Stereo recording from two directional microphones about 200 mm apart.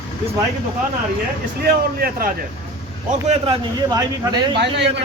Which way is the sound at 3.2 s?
35° right (ahead or behind).